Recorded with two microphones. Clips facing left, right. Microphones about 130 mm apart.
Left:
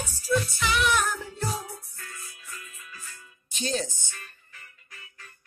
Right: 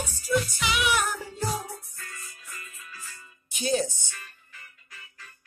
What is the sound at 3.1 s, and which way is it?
Music, 15° right (ahead or behind).